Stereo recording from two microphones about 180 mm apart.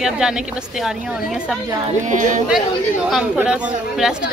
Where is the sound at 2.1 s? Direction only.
45° right (ahead or behind).